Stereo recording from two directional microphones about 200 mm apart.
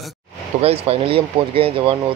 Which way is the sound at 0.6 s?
30° right (ahead or behind).